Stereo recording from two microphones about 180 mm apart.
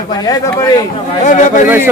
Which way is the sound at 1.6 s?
10° right (ahead or behind).